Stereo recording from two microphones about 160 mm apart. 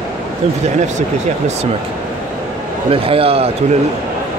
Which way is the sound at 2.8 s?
35° right (ahead or behind).